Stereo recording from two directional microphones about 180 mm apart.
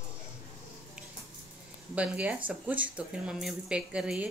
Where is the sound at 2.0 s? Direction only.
5° right (ahead or behind).